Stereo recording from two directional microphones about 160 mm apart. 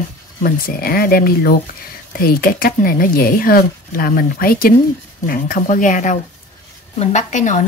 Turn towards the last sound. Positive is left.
turn(degrees=50)  # may be behind; listen again after turning